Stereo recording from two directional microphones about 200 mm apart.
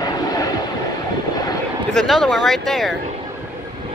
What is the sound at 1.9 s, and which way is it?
Speech, centre (ahead or behind).